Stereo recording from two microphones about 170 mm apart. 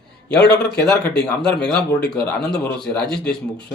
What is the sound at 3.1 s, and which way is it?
Speech, 70° left (ahead or behind).